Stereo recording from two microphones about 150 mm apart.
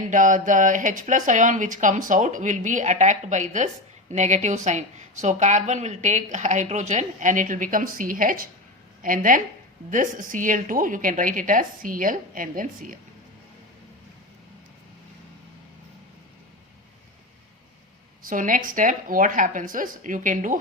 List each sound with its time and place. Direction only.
0.1 s a woman's voice: 60° right (ahead or behind)
18.2 s speech: 65° right (ahead or behind)